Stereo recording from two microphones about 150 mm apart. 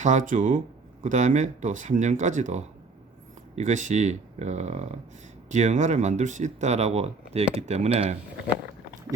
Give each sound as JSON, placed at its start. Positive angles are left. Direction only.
{"t": 0.0, "sound": "speech", "side_deg": -55}